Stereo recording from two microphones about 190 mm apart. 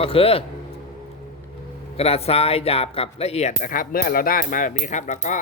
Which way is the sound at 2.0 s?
30° left (ahead or behind).